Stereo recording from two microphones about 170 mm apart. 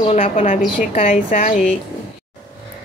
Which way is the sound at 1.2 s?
55° left (ahead or behind).